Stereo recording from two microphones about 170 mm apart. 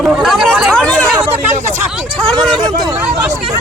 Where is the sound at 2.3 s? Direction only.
5° left (ahead or behind).